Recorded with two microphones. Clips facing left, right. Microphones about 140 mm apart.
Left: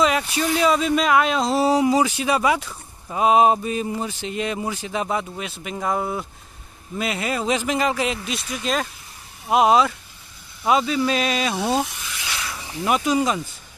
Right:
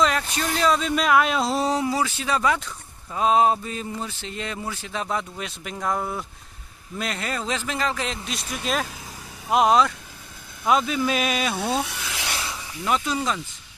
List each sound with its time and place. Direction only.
0.0 s speech: 5° left (ahead or behind)
8.3 s speech: centre (ahead or behind)
11.9 s rub: 85° right
12.8 s speech: 15° left (ahead or behind)